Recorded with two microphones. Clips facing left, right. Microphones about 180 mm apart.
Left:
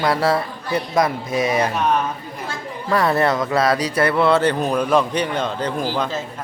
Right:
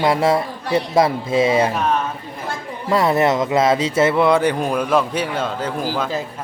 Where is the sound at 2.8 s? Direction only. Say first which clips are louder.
Right 2 dB; 20° right (ahead or behind).